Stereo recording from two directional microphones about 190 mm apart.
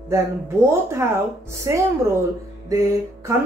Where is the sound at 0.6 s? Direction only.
15° right (ahead or behind).